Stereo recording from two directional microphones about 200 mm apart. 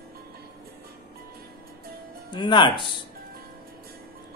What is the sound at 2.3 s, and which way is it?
Mantra, 25° left (ahead or behind).